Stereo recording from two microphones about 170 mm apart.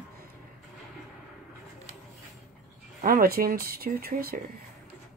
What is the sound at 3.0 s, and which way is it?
A man's voice, 60° right (ahead or behind).